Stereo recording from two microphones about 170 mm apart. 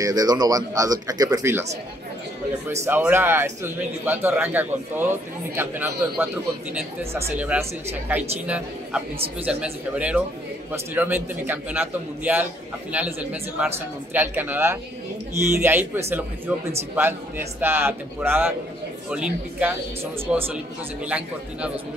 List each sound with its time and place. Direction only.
0.0 s speech: 20° right (ahead or behind)
2.8 s a man's voice: 10° right (ahead or behind)